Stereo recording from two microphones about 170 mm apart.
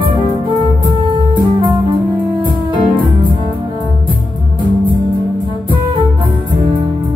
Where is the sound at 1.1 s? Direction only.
25° right (ahead or behind).